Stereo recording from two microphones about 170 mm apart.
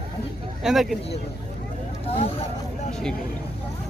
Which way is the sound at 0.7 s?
Centre (ahead or behind).